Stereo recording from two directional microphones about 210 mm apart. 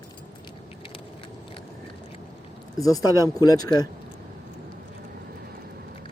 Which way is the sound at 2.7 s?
15° left (ahead or behind).